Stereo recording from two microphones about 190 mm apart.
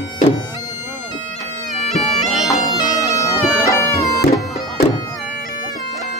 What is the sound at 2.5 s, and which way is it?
Bagpipes, 20° left (ahead or behind).